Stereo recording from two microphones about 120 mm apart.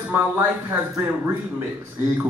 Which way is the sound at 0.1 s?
15° right (ahead or behind).